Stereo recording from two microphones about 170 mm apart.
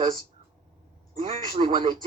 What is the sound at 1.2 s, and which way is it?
Speech, 35° right (ahead or behind).